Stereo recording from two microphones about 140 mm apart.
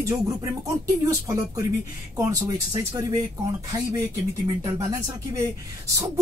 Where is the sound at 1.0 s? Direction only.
20° right (ahead or behind).